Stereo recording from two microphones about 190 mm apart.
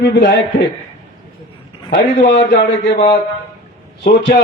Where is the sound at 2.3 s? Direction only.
65° left (ahead or behind).